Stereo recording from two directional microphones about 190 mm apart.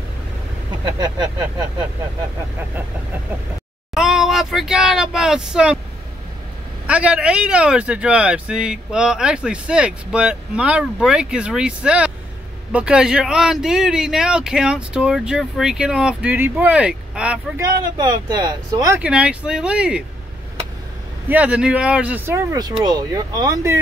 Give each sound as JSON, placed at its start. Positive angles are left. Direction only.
{"t": 0.8, "sound": "speech", "side_deg": -20}
{"t": 3.9, "sound": "speech", "side_deg": 0}
{"t": 6.9, "sound": "speech", "side_deg": -5}
{"t": 17.9, "sound": "speech", "side_deg": -20}
{"t": 21.3, "sound": "speech", "side_deg": -5}